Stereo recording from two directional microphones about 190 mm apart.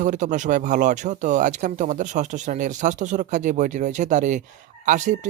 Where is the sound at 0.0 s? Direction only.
40° right (ahead or behind).